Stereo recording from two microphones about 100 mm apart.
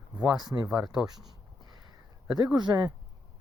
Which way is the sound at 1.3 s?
45° right (ahead or behind).